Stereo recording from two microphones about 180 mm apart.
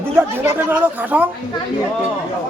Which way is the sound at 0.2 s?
10° right (ahead or behind).